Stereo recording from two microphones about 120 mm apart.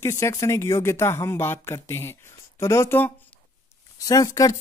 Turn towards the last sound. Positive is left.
turn(degrees=30)  # may be behind; listen again after turning